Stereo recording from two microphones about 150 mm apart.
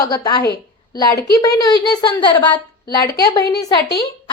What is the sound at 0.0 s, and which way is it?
Speech, 25° left (ahead or behind).